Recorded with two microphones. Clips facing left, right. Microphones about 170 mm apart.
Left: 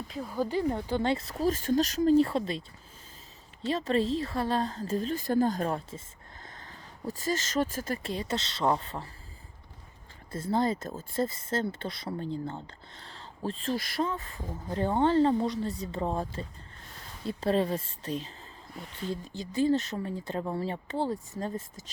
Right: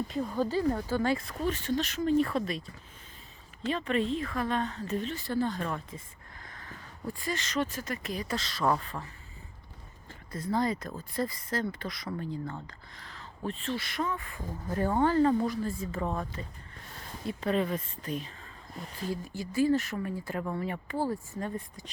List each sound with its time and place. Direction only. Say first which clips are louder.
0.1 s speech: left 3 dB; 5° left (ahead or behind); by 2.6 s 25° left (ahead or behind)
3.7 s a woman's voice: left 2 dB; 35° left (ahead or behind)
6.4 s a sound: right 1 dB; 25° left (ahead or behind)
7.1 s speech: left 3 dB; 40° left (ahead or behind)
7.9 s speech: left 2 dB; 30° left (ahead or behind)
10.3 s a woman's voice: left 2 dB; 25° left (ahead or behind)